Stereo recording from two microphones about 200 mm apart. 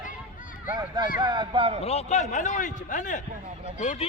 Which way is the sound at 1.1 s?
25° right (ahead or behind).